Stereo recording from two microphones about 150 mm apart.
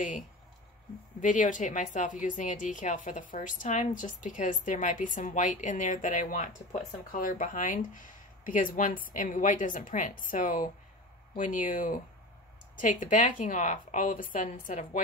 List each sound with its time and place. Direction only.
1.2 s a woman's voice: 60° left (ahead or behind)